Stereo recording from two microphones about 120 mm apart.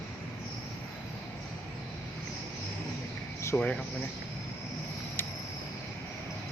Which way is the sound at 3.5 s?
20° left (ahead or behind).